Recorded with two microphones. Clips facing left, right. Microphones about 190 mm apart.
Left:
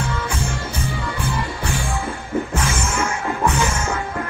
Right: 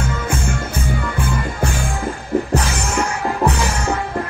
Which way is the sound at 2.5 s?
35° right (ahead or behind).